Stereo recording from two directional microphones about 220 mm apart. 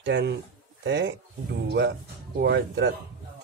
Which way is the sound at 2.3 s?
45° right (ahead or behind).